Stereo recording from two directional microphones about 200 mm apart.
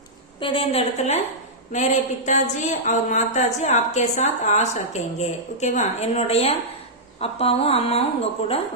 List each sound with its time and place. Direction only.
0.3 s a woman's voice: 25° left (ahead or behind)